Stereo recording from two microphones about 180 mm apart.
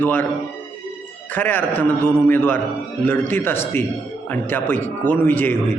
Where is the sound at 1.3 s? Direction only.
10° left (ahead or behind).